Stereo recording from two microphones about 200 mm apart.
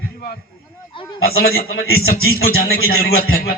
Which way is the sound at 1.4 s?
50° left (ahead or behind).